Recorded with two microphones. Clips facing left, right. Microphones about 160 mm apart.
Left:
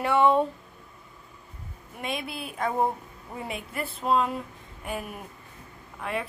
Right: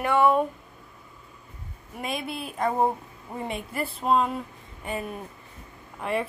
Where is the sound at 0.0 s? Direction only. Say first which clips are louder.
Even; 20° left (ahead or behind).